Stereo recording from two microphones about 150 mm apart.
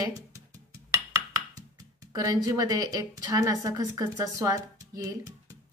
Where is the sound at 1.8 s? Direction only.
25° right (ahead or behind).